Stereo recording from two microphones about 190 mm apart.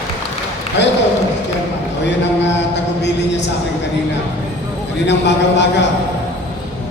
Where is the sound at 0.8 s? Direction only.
70° left (ahead or behind).